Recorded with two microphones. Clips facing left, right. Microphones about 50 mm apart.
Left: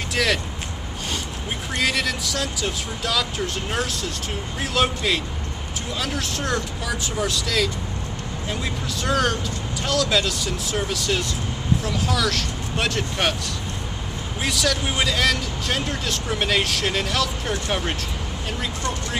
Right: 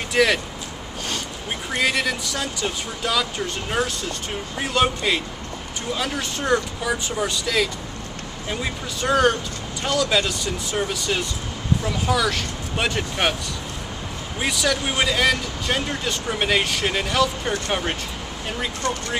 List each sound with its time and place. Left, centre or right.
0.1 s speech: centre
1.7 s speech: centre
14.4 s speech: centre